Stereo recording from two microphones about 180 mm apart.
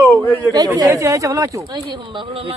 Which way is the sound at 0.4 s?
20° right (ahead or behind).